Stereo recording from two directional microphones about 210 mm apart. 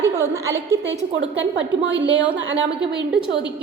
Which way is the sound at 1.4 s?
60° right (ahead or behind).